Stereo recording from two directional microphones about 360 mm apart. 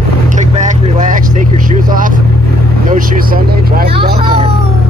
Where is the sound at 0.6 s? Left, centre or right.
Centre.